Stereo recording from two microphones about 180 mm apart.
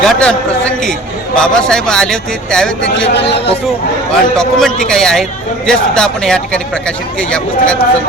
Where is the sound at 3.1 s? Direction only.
70° left (ahead or behind).